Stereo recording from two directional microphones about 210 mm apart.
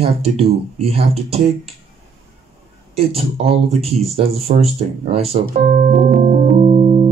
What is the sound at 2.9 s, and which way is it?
Speech, 30° right (ahead or behind).